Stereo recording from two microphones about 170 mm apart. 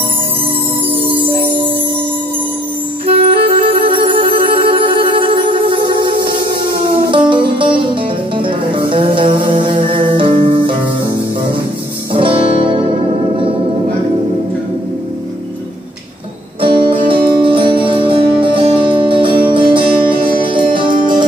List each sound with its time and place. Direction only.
3.2 s music: 35° right (ahead or behind)
6.1 s music: 65° right (ahead or behind)
7.1 s music: 30° right (ahead or behind)
12.1 s music: 30° right (ahead or behind)
16.6 s music: 30° right (ahead or behind)